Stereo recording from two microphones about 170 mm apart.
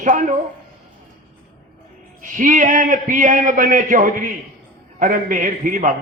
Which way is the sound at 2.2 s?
50° right (ahead or behind).